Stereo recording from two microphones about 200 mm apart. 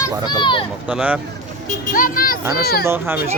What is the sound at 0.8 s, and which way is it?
Speech, 5° right (ahead or behind).